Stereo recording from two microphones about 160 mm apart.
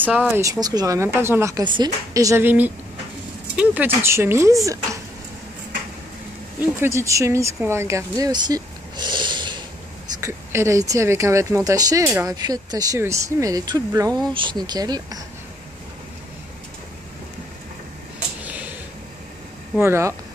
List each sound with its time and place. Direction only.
0.0 s a woman's voice: 10° right (ahead or behind)
0.5 s a woman's voice: 25° right (ahead or behind)
6.8 s speech: 15° right (ahead or behind)
10.2 s speech: 15° right (ahead or behind)
18.4 s a sound: 10° right (ahead or behind)
19.8 s a woman's voice: 15° right (ahead or behind)